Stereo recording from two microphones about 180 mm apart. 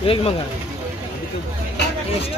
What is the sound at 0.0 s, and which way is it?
Speech, 30° left (ahead or behind).